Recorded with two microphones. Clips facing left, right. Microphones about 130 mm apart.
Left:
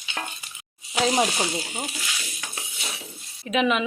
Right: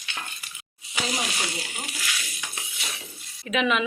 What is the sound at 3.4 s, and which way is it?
Speech, 35° left (ahead or behind).